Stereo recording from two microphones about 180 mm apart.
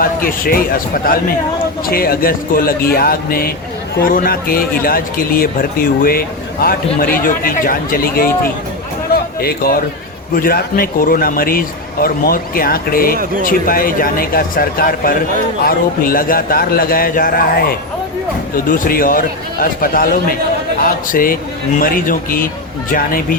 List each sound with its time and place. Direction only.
0.0 s a man's voice: 50° left (ahead or behind)
9.1 s a sound: 60° left (ahead or behind)
10.3 s a man's voice: 55° left (ahead or behind)